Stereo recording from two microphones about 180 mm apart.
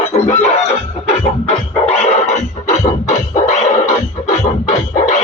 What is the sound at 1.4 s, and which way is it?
Scratching, 35° left (ahead or behind).